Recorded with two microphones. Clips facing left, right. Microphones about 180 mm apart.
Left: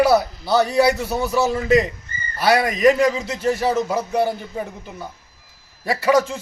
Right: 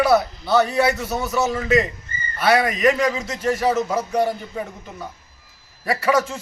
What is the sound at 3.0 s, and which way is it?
Speech, 25° left (ahead or behind).